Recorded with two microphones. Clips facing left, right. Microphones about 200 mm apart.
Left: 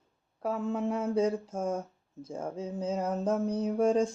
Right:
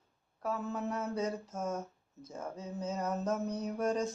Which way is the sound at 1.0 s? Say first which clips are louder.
Left 7 dB; 30° left (ahead or behind).